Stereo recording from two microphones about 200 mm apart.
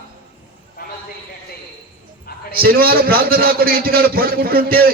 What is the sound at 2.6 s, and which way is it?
A man's voice, 50° right (ahead or behind).